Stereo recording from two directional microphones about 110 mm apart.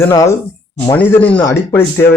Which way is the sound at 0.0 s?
25° left (ahead or behind).